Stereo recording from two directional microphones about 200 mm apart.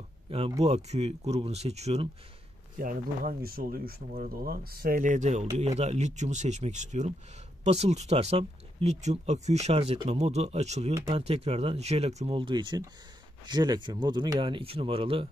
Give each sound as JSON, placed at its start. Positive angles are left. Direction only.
{"t": 0.6, "sound": "speech", "side_deg": -30}
{"t": 2.8, "sound": "speech", "side_deg": -45}